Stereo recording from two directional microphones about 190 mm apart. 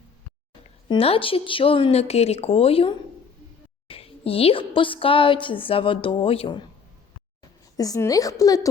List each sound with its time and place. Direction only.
0.9 s a woman's voice: 30° left (ahead or behind)
7.8 s a woman's voice: 15° left (ahead or behind)